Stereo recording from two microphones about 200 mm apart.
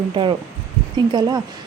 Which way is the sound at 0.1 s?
25° right (ahead or behind).